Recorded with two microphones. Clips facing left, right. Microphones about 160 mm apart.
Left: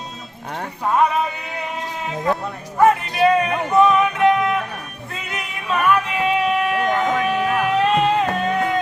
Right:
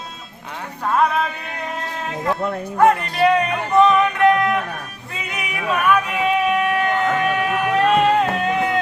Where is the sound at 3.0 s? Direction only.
Centre (ahead or behind).